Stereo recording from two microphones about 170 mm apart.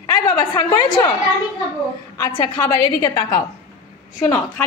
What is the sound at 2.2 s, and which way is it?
A woman's voice, 25° left (ahead or behind).